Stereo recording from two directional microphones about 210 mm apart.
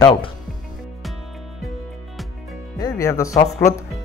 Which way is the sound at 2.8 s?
15° left (ahead or behind).